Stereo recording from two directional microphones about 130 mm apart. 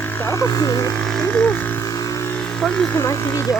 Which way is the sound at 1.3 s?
15° left (ahead or behind).